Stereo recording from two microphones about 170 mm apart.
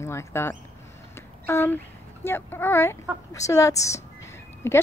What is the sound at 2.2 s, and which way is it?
Speech, 15° left (ahead or behind).